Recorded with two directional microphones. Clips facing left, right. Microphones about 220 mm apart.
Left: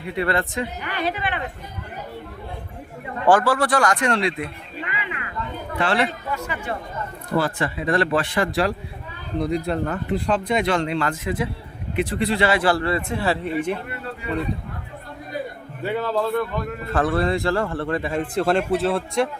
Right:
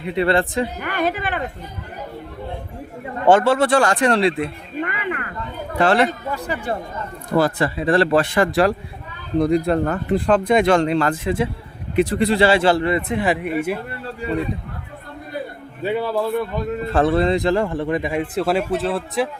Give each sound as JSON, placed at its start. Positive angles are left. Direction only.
{"t": 0.0, "sound": "a man's voice", "side_deg": -25}
{"t": 0.8, "sound": "speech", "side_deg": -50}
{"t": 3.2, "sound": "a man's voice", "side_deg": -25}
{"t": 4.8, "sound": "a sound", "side_deg": -50}
{"t": 5.8, "sound": "speech", "side_deg": -45}
{"t": 11.9, "sound": "a man's voice", "side_deg": -40}
{"t": 15.8, "sound": "a man's voice", "side_deg": -15}
{"t": 16.9, "sound": "a man's voice", "side_deg": -25}